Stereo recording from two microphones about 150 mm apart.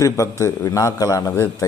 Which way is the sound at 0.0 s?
20° left (ahead or behind).